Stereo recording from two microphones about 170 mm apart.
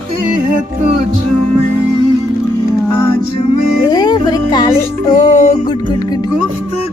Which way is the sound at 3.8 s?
25° left (ahead or behind).